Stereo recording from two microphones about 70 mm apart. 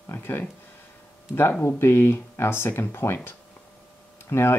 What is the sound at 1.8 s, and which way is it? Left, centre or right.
Speech, left.